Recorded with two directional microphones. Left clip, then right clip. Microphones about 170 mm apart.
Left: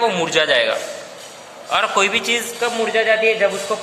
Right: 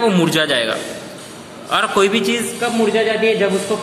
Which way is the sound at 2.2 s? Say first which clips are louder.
Even; 30° left (ahead or behind).